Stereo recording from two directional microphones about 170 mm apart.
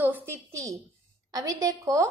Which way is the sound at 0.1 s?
15° right (ahead or behind).